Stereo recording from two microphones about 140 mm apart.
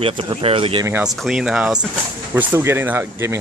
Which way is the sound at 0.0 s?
40° right (ahead or behind).